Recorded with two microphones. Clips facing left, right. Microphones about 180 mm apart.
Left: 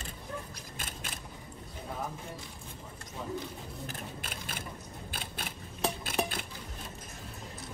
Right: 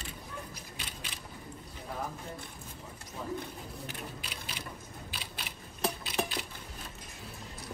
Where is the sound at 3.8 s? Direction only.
45° left (ahead or behind).